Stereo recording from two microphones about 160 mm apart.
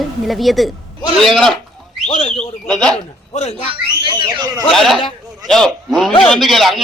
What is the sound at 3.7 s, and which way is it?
Speech, 30° right (ahead or behind).